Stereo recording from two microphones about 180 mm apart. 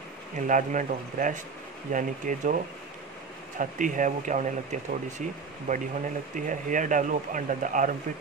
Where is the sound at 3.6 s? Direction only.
45° right (ahead or behind).